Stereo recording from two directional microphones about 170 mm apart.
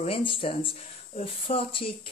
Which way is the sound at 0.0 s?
30° left (ahead or behind).